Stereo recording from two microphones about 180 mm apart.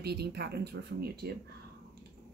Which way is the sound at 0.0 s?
65° right (ahead or behind).